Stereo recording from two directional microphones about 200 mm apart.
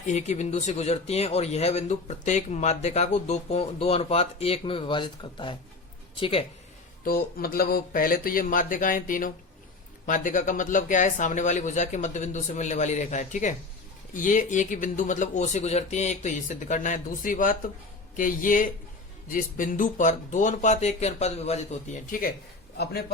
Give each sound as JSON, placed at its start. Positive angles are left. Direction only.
{"t": 0.1, "sound": "speech", "side_deg": 35}
{"t": 7.0, "sound": "speech", "side_deg": 45}